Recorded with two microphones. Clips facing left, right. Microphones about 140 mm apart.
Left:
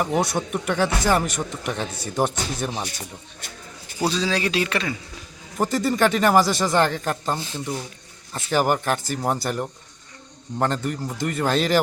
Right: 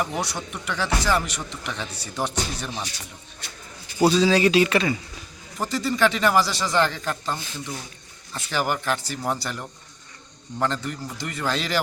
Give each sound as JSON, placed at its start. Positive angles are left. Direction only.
{"t": 0.0, "sound": "speech", "side_deg": 50}
{"t": 4.0, "sound": "speech", "side_deg": -5}
{"t": 5.5, "sound": "speech", "side_deg": 50}
{"t": 7.3, "sound": "speech", "side_deg": 30}
{"t": 8.4, "sound": "speech", "side_deg": 45}